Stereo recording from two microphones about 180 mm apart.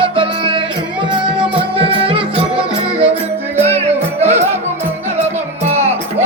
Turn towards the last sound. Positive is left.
turn(degrees=-40)  # may be behind; listen again after turning